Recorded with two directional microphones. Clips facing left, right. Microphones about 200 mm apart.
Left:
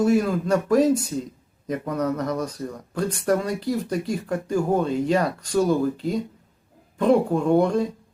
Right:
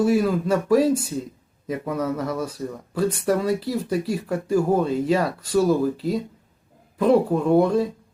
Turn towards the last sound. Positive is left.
turn(degrees=-5)  # may be behind; listen again after turning